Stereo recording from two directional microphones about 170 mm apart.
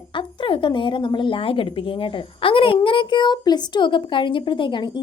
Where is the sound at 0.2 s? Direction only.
30° left (ahead or behind).